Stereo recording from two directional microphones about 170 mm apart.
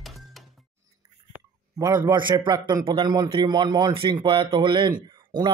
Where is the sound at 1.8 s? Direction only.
20° right (ahead or behind).